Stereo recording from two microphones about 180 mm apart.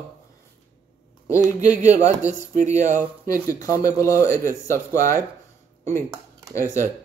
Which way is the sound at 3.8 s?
15° left (ahead or behind).